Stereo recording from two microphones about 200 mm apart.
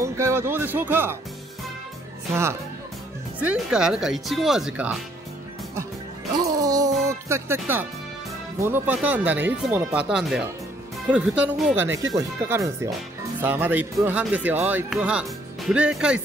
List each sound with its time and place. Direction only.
0.0 s speech: 15° right (ahead or behind)
3.3 s speech: 5° right (ahead or behind)
6.3 s music: 15° right (ahead or behind)
8.5 s speech: 10° right (ahead or behind)